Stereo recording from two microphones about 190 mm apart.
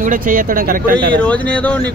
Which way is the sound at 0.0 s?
45° right (ahead or behind).